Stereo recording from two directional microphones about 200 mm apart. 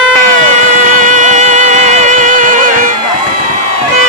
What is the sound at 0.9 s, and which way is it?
Music, 40° right (ahead or behind).